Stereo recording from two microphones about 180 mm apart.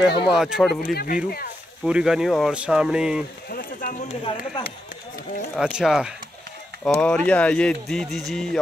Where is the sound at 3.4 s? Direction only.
55° left (ahead or behind).